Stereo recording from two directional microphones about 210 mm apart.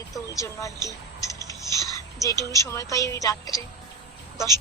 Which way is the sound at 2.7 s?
15° left (ahead or behind).